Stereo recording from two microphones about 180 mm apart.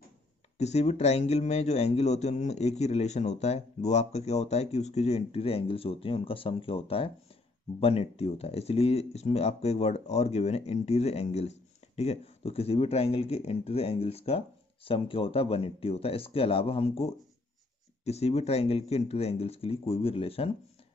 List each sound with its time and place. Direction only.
0.6 s speech: 35° left (ahead or behind)